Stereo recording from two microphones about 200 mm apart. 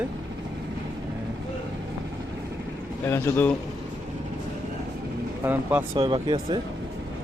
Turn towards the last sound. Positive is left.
turn(degrees=-25)  # may be behind; listen again after turning